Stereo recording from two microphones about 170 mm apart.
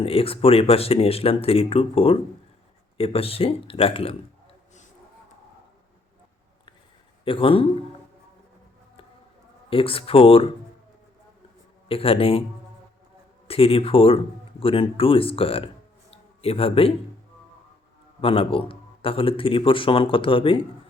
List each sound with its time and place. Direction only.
0.0 s a man's voice: 35° left (ahead or behind)
7.3 s a man's voice: 30° left (ahead or behind)
9.6 s a man's voice: 35° left (ahead or behind)
11.9 s a man's voice: 35° left (ahead or behind)
13.5 s a man's voice: 35° left (ahead or behind)
18.2 s a man's voice: 30° left (ahead or behind)